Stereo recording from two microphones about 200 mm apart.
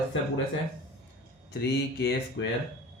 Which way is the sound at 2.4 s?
65° left (ahead or behind).